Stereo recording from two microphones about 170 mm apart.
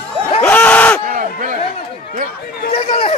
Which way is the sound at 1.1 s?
50° right (ahead or behind).